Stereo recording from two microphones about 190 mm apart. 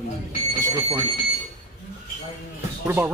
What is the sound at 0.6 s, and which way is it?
Speech, 15° right (ahead or behind).